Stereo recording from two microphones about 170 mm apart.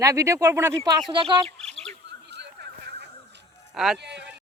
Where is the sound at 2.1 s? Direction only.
90° right.